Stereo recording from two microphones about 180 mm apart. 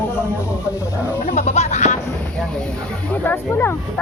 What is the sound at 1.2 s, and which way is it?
Music, 40° left (ahead or behind).